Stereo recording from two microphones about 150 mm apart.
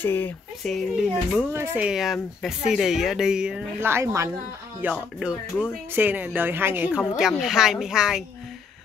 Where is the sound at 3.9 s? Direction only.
20° right (ahead or behind).